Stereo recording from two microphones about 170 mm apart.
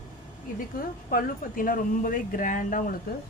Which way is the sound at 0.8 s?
55° left (ahead or behind).